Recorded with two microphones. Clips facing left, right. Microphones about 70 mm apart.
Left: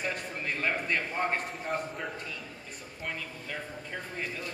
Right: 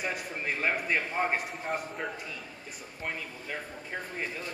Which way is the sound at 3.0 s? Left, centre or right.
Centre.